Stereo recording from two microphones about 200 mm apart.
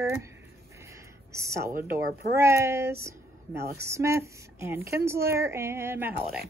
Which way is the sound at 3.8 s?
15° right (ahead or behind).